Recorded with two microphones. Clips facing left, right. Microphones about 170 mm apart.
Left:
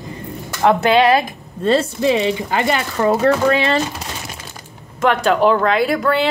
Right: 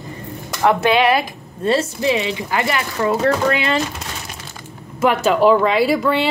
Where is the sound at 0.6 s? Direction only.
30° left (ahead or behind).